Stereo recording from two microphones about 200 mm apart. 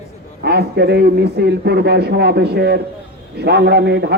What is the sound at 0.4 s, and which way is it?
Speech, 55° right (ahead or behind).